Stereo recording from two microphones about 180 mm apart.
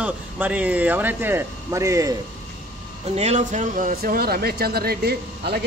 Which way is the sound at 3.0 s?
40° right (ahead or behind).